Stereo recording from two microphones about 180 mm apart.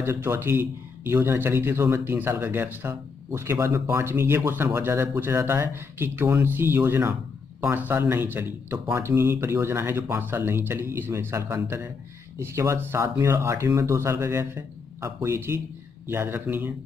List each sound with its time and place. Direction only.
0.0 s speech: 15° right (ahead or behind)